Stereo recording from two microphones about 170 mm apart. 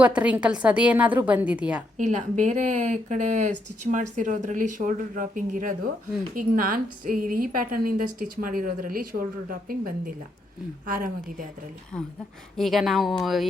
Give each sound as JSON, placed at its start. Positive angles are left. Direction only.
{"t": 0.0, "sound": "a woman's voice", "side_deg": -10}
{"t": 2.0, "sound": "a woman's voice", "side_deg": -45}
{"t": 10.9, "sound": "speech", "side_deg": -55}
{"t": 11.9, "sound": "a woman's voice", "side_deg": 5}